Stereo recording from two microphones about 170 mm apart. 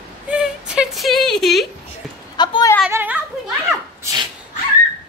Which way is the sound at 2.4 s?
25° left (ahead or behind).